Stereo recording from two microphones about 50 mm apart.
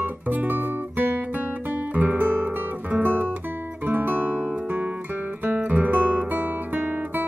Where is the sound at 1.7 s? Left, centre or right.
Right.